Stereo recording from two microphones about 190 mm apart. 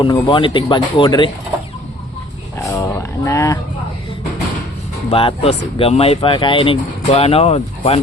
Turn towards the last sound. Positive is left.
turn(degrees=30)  # may be behind; listen again after turning